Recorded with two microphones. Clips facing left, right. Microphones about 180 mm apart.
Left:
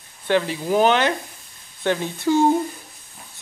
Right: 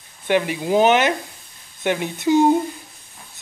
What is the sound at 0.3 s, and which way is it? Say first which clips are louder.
Speech: right 1 dB; 15° right (ahead or behind).